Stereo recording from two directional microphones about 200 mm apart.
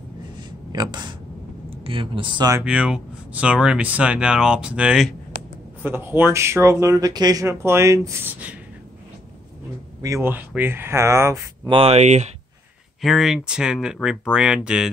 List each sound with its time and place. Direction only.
0.7 s speech: 20° right (ahead or behind)
2.6 s speech: 5° right (ahead or behind)
10.0 s speech: 15° right (ahead or behind); by 12.3 s 35° right (ahead or behind)
13.0 s speech: centre (ahead or behind)